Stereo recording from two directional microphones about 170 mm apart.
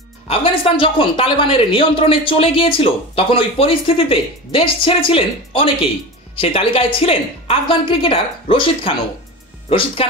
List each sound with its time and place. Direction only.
0.3 s speech: 30° left (ahead or behind)